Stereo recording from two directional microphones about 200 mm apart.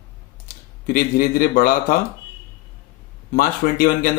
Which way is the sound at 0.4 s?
45° left (ahead or behind).